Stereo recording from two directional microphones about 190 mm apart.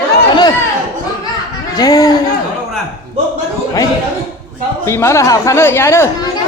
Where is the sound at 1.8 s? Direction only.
20° left (ahead or behind).